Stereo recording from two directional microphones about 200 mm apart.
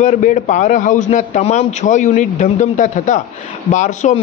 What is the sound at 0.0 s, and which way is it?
A man's voice, 35° left (ahead or behind).